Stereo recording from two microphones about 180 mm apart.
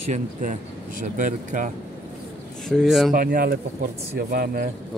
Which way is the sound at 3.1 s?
50° right (ahead or behind).